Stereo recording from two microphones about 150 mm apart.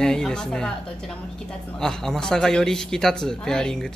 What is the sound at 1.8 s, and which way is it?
A man's voice, 5° left (ahead or behind).